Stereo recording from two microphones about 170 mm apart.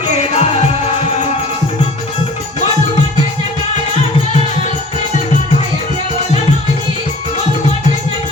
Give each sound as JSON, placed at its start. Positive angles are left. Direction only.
{"t": 0.2, "sound": "music", "side_deg": 40}